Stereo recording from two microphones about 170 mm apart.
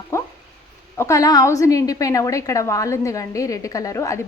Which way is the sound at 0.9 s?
15° left (ahead or behind).